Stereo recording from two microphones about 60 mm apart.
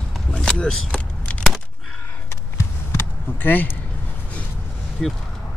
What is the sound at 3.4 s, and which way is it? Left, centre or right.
Speech, left.